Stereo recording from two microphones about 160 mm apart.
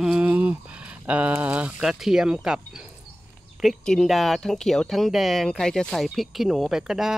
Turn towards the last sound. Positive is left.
turn(degrees=-5)  # may be behind; listen again after turning